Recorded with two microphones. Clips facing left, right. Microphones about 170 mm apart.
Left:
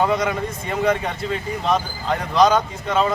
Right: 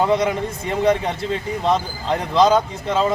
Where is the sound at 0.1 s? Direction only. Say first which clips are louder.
Right 2 dB; 25° right (ahead or behind).